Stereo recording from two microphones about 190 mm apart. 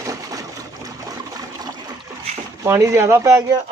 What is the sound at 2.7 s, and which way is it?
Speech, 15° right (ahead or behind).